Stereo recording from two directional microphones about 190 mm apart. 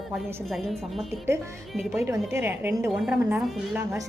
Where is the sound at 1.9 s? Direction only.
15° right (ahead or behind).